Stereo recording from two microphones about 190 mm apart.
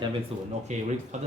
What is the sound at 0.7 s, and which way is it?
Speech, 40° right (ahead or behind).